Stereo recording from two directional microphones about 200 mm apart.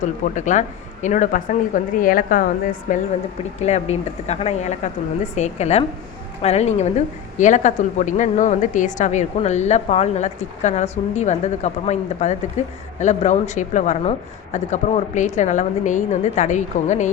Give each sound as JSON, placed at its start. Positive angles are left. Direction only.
{"t": 0.0, "sound": "a woman's voice", "side_deg": 40}